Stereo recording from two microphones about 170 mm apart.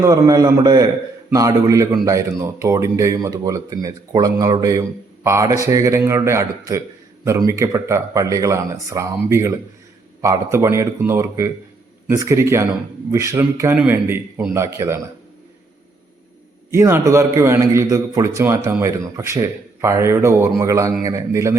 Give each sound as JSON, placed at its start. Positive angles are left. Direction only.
{"t": 0.0, "sound": "a man's voice", "side_deg": -20}
{"t": 16.7, "sound": "a man's voice", "side_deg": -15}